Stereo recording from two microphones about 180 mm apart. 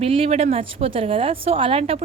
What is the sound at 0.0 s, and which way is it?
A woman's voice, 30° right (ahead or behind).